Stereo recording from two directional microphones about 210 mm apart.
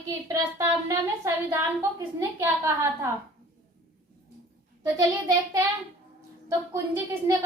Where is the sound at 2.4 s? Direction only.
10° right (ahead or behind).